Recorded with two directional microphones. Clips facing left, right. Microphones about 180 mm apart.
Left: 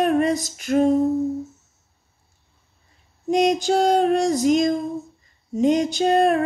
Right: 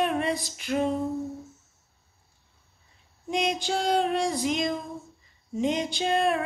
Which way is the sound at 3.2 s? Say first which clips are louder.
Left 9 dB; 40° left (ahead or behind).